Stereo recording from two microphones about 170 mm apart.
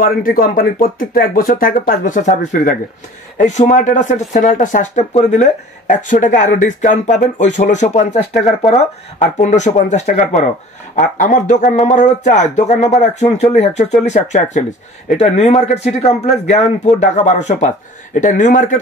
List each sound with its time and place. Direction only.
0.0 s speech: 55° left (ahead or behind)
8.4 s speech: centre (ahead or behind)
9.2 s speech: 45° left (ahead or behind)